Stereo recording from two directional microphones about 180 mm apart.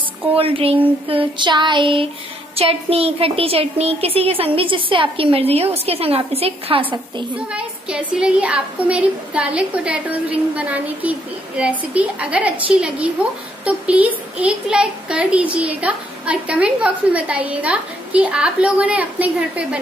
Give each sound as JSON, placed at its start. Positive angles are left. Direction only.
{"t": 0.4, "sound": "child singing", "side_deg": -30}
{"t": 2.5, "sound": "a woman's voice", "side_deg": -35}
{"t": 7.3, "sound": "a woman's voice", "side_deg": -5}